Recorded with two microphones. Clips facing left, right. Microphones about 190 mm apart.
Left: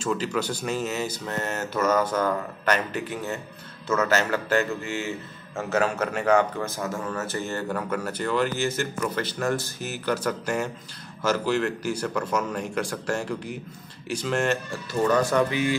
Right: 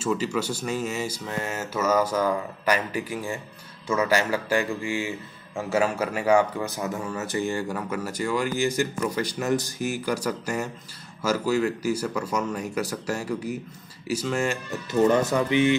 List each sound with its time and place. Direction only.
0.0 s speech: 5° right (ahead or behind)
14.7 s speech: 20° right (ahead or behind)